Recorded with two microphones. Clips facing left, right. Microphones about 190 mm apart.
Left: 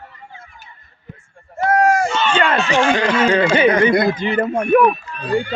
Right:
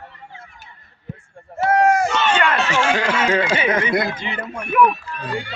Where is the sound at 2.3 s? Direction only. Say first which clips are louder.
Left 2 dB; 30° left (ahead or behind).